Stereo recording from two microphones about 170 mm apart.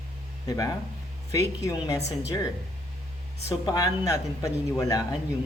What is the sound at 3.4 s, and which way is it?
Speech, 20° left (ahead or behind).